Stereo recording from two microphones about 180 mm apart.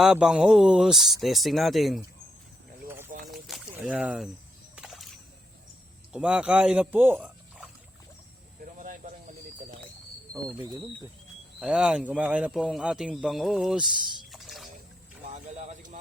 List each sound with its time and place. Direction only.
0.0 s a man's voice: 5° right (ahead or behind)
3.2 s boat: centre (ahead or behind)
3.8 s a man's voice: 5° right (ahead or behind)
4.7 s a sound: 5° right (ahead or behind)
6.1 s speech: 5° right (ahead or behind)
8.6 s a sound: 45° right (ahead or behind)
11.6 s a man's voice: 5° right (ahead or behind)
14.3 s rowboat: centre (ahead or behind)
15.3 s a sound: 40° right (ahead or behind)